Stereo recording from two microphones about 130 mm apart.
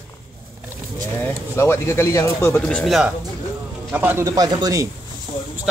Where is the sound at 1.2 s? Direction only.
20° left (ahead or behind).